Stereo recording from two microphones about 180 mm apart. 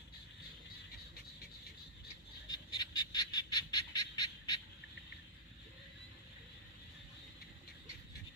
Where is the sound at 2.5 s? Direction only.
25° left (ahead or behind).